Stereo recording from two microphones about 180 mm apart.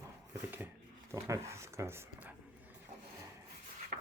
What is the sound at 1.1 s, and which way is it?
Speech, 15° right (ahead or behind).